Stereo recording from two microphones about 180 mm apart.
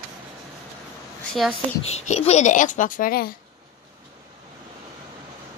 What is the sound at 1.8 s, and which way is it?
Speech, 35° left (ahead or behind).